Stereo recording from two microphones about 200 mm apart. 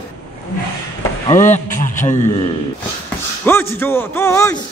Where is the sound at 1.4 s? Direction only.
40° left (ahead or behind).